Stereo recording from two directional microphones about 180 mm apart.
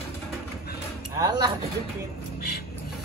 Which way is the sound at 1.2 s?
20° right (ahead or behind).